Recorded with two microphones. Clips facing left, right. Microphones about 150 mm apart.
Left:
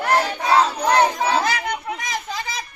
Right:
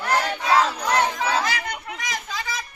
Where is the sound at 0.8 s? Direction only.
40° left (ahead or behind).